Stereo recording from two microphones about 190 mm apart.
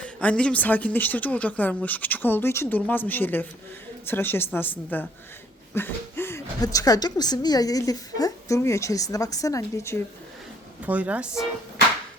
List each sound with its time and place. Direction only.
0.0 s a woman's voice: 5° left (ahead or behind)
10.8 s speech: 5° right (ahead or behind)